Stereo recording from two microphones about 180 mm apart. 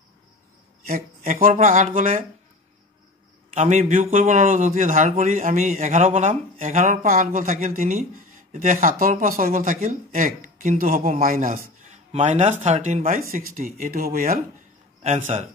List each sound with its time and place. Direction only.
0.8 s speech: 50° right (ahead or behind)
3.5 s speech: 40° right (ahead or behind)
15.0 s a man's voice: 40° right (ahead or behind)